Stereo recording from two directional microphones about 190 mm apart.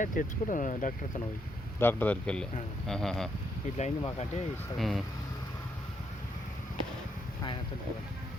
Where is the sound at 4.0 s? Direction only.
35° left (ahead or behind).